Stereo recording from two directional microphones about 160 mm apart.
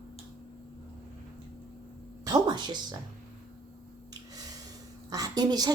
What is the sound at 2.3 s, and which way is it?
Speech, 30° right (ahead or behind).